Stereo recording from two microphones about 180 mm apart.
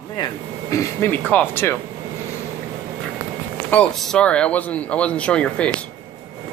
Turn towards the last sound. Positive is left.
turn(degrees=5)  # may be behind; listen again after turning